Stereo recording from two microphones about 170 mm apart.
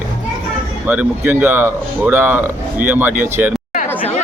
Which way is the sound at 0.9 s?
10° right (ahead or behind).